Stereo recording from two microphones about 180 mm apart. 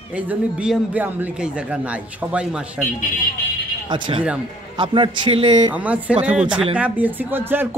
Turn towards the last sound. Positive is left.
turn(degrees=-10)  # may be behind; listen again after turning